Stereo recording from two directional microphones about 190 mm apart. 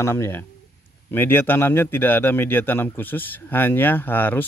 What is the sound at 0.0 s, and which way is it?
Speech, 15° left (ahead or behind).